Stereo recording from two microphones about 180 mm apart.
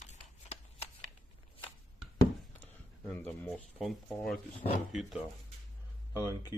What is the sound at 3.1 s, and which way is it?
Speech, 10° left (ahead or behind).